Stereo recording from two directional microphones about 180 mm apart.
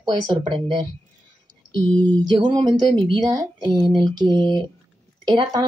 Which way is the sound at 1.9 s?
5° left (ahead or behind).